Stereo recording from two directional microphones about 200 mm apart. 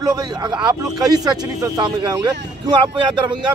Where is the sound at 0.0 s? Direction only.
20° right (ahead or behind).